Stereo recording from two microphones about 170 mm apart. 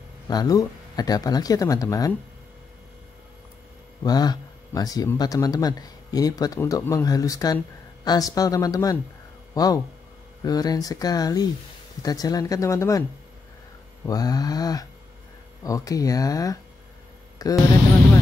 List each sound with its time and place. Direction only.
0.3 s speech: 20° left (ahead or behind)
4.0 s speech: 25° left (ahead or behind)
14.0 s speech: 20° left (ahead or behind)